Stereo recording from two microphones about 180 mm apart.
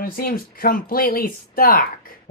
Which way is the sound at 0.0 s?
55° left (ahead or behind).